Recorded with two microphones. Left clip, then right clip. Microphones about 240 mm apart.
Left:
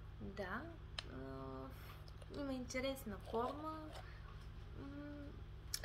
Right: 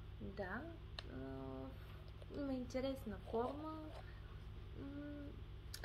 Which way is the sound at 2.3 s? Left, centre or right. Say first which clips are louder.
Even; left.